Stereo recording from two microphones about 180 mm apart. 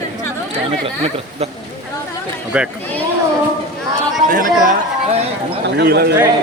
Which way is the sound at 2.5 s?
5° right (ahead or behind).